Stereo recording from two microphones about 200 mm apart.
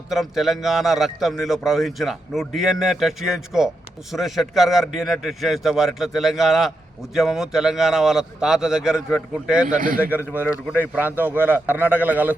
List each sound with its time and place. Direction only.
0.1 s a man's voice: centre (ahead or behind)
9.6 s a man's voice: 40° right (ahead or behind)
10.0 s a man's voice: 10° right (ahead or behind)